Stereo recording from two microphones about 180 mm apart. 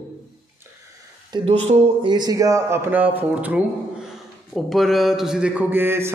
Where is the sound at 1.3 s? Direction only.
35° right (ahead or behind).